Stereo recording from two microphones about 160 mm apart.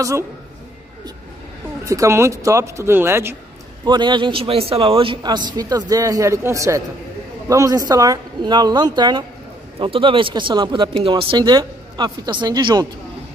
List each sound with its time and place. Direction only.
1.9 s speech: 20° right (ahead or behind)
3.8 s a man's voice: 30° right (ahead or behind)